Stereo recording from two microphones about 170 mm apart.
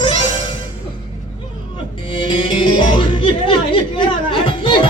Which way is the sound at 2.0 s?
30° left (ahead or behind).